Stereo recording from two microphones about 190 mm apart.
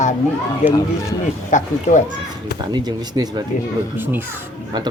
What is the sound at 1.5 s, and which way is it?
Speech, 40° left (ahead or behind).